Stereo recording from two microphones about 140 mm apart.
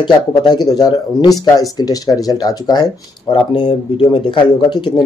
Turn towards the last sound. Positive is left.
turn(degrees=35)  # may be behind; listen again after turning